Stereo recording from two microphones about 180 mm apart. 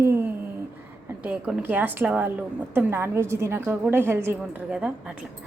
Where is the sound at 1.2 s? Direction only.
10° right (ahead or behind).